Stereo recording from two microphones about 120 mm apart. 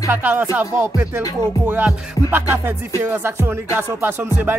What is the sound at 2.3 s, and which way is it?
Music, 15° right (ahead or behind).